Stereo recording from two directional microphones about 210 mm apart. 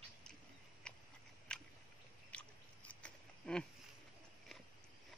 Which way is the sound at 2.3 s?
5° left (ahead or behind).